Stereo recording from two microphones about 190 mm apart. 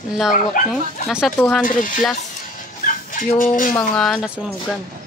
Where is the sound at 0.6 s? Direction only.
45° left (ahead or behind).